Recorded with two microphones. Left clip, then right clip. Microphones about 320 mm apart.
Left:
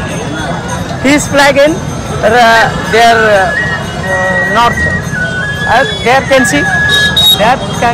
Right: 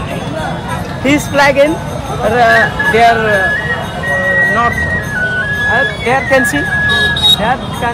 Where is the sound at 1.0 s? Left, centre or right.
Left.